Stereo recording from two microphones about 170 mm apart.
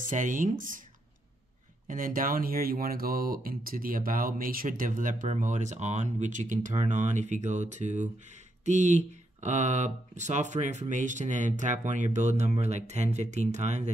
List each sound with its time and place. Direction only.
0.1 s speech: 50° right (ahead or behind)
1.9 s speech: 55° right (ahead or behind)